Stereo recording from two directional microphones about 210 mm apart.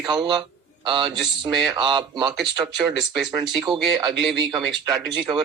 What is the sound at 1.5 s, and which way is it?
Speech, centre (ahead or behind).